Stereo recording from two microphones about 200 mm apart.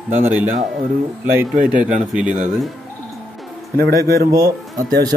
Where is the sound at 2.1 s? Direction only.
5° right (ahead or behind).